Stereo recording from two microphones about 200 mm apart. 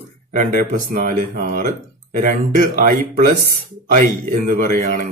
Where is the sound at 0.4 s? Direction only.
40° right (ahead or behind).